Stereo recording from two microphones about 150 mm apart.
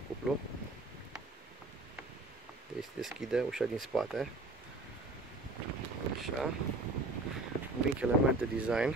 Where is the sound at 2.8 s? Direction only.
5° right (ahead or behind).